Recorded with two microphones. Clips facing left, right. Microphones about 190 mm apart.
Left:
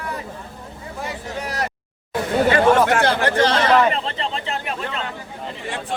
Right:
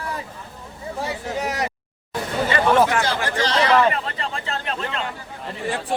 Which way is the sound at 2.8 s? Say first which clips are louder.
Left 4 dB; 60° left (ahead or behind).